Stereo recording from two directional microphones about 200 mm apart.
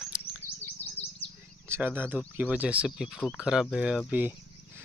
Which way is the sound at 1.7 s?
10° right (ahead or behind).